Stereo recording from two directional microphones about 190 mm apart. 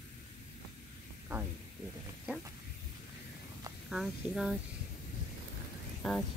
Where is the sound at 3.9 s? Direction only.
5° right (ahead or behind).